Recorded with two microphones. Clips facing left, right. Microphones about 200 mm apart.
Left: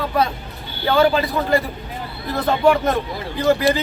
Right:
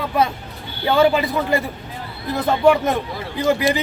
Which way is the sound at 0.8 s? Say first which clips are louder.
Even; 20° right (ahead or behind).